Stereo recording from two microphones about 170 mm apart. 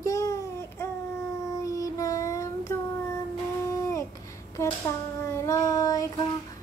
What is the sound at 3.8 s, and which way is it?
Babbling, 20° left (ahead or behind).